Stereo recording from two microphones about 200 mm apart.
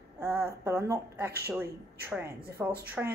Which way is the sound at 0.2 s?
10° right (ahead or behind).